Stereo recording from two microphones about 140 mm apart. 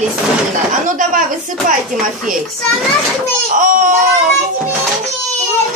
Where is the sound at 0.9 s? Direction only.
70° right (ahead or behind).